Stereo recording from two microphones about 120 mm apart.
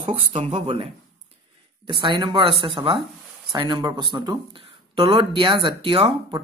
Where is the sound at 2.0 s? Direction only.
40° right (ahead or behind).